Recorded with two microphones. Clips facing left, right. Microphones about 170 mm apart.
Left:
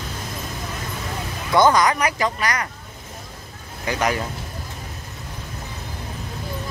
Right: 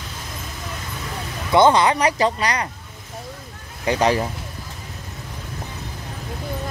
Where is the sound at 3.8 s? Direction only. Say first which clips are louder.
Right 4 dB; 30° right (ahead or behind).